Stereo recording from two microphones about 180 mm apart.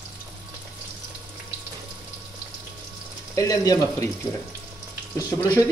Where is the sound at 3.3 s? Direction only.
20° left (ahead or behind).